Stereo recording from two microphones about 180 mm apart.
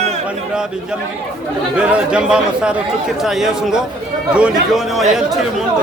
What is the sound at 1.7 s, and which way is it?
Speech, 5° right (ahead or behind).